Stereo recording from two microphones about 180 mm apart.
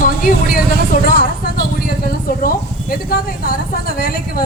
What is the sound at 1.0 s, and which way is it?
Vehicle, 55° left (ahead or behind).